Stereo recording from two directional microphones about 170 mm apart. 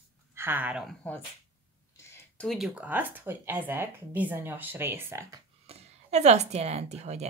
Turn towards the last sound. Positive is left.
turn(degrees=-40)  # may be behind; listen again after turning